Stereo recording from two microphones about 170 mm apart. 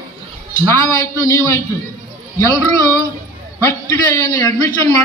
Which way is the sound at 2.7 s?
20° left (ahead or behind).